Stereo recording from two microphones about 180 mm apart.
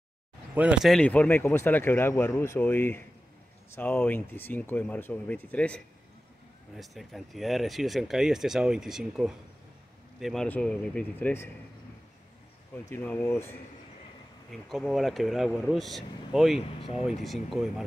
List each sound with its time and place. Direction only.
0.6 s speech: 5° right (ahead or behind)
6.8 s speech: centre (ahead or behind)
12.7 s speech: 10° left (ahead or behind)
14.5 s speech: centre (ahead or behind)
16.6 s speech: 30° left (ahead or behind)
17.2 s speech: centre (ahead or behind)